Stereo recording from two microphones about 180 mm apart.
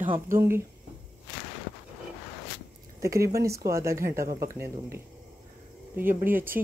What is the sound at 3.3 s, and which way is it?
Speech, 15° right (ahead or behind).